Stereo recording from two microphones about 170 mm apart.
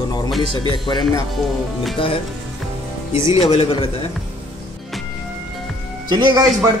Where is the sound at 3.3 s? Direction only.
35° left (ahead or behind).